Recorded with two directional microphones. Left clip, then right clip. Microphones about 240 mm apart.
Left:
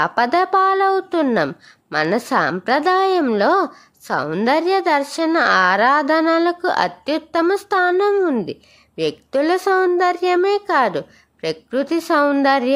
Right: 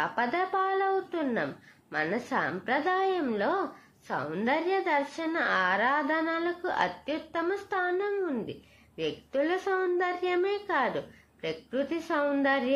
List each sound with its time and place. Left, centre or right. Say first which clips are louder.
0.0 s speech: left 12 dB; left